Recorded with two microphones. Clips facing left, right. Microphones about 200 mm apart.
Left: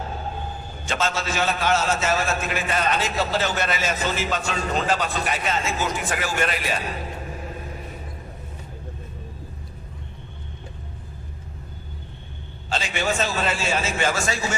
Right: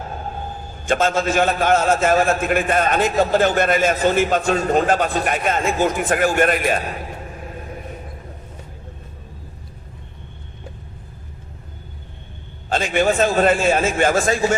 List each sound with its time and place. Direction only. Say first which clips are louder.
0.9 s a man's voice: right 8 dB; 50° right (ahead or behind)
12.6 s a man's voice: right 7 dB; 50° right (ahead or behind)